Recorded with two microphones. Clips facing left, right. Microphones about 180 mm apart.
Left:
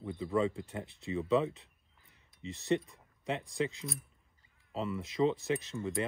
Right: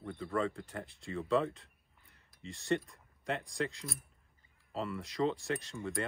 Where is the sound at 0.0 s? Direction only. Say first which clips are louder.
Left 3 dB; 5° left (ahead or behind).